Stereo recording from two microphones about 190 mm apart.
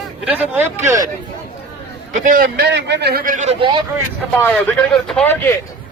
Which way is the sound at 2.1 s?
45° right (ahead or behind).